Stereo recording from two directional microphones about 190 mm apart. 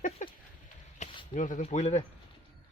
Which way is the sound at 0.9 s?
40° left (ahead or behind).